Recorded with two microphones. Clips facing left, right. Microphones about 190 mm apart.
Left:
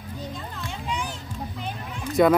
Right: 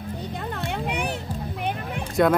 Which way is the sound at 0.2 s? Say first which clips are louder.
Right 3 dB; 65° right (ahead or behind).